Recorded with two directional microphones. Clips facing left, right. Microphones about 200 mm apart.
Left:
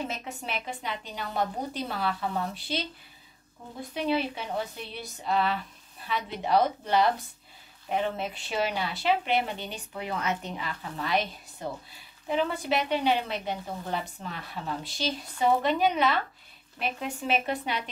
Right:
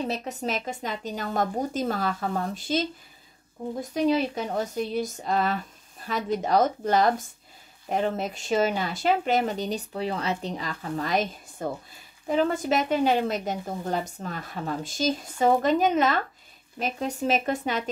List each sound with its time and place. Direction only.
0.1 s a woman's voice: 40° right (ahead or behind)
3.9 s a woman's voice: 40° right (ahead or behind)